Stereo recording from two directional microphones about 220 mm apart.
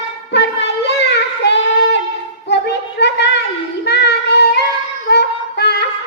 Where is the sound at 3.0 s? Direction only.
50° left (ahead or behind).